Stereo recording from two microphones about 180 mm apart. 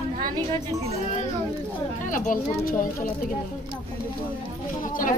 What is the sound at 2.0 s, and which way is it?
Speech, 45° left (ahead or behind).